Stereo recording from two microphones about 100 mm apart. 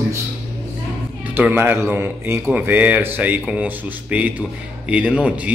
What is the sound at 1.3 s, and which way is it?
Speech, 20° right (ahead or behind).